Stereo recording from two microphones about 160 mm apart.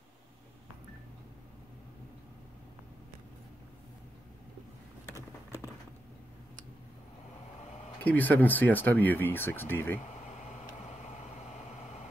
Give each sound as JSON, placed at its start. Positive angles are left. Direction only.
{"t": 5.1, "sound": "clip-clop", "side_deg": -15}
{"t": 8.0, "sound": "speech", "side_deg": 10}
{"t": 10.2, "sound": "vehicle", "side_deg": 50}